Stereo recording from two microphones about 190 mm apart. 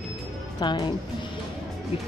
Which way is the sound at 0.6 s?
20° left (ahead or behind).